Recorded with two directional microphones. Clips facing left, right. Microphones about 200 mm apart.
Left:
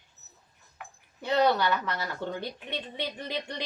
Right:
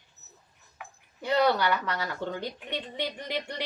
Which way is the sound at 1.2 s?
10° right (ahead or behind).